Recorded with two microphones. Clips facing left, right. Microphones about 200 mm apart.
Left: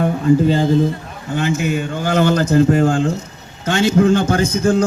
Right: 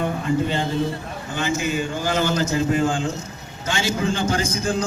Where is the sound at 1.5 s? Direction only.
60° left (ahead or behind).